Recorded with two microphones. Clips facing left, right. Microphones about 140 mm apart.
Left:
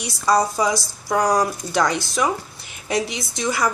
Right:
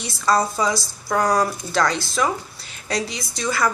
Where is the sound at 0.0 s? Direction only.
15° left (ahead or behind).